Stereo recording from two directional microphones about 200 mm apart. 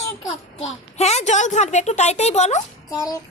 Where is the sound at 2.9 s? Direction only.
15° left (ahead or behind).